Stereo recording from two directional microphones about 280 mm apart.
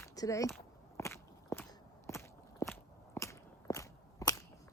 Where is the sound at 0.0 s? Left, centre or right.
Centre.